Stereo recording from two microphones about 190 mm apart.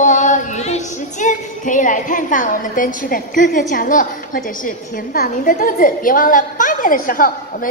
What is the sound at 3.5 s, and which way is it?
A woman's voice, 45° left (ahead or behind).